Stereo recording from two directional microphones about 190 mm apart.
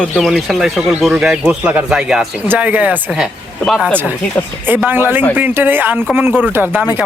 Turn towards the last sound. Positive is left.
turn(degrees=-10)  # may be behind; listen again after turning